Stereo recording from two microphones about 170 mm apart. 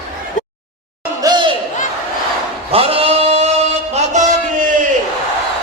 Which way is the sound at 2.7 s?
35° right (ahead or behind).